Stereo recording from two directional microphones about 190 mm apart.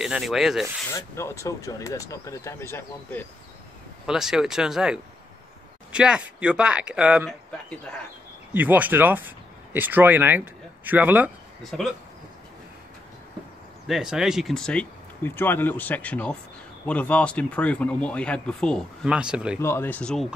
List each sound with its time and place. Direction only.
0.0 s speech: centre (ahead or behind)
0.9 s speech: 15° left (ahead or behind)
4.0 s speech: 5° right (ahead or behind)
8.5 s speech: 10° right (ahead or behind)
11.7 s speech: 5° left (ahead or behind)
13.8 s speech: centre (ahead or behind)
19.6 s speech: 15° left (ahead or behind)